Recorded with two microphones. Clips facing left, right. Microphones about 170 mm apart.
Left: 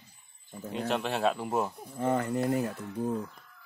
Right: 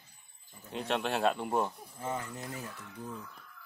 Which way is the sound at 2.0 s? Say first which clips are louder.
Left 10 dB; 60° left (ahead or behind).